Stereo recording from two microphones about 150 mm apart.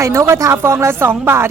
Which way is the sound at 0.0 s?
20° right (ahead or behind).